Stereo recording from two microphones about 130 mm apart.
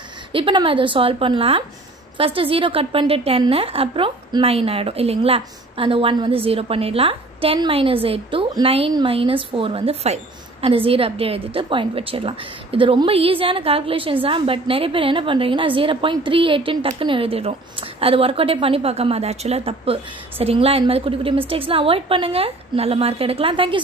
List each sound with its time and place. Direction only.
0.3 s a woman's voice: 40° right (ahead or behind)